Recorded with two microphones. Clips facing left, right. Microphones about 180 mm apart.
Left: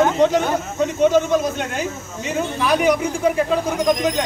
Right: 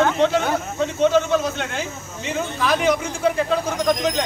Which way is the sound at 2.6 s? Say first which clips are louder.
Left 2 dB; 10° left (ahead or behind).